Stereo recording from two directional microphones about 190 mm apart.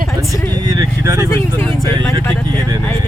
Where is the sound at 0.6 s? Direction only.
20° right (ahead or behind).